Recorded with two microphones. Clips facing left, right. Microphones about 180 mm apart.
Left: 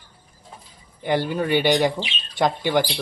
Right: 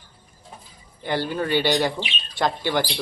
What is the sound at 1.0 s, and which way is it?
Speech, 15° left (ahead or behind).